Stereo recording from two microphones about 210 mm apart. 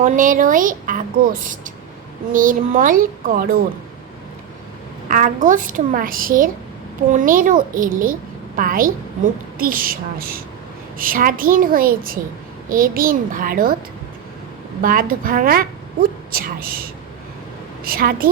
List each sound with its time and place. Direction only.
0.0 s a woman's voice: 40° right (ahead or behind)
5.0 s a woman's voice: 40° right (ahead or behind)
14.8 s a woman's voice: 40° right (ahead or behind)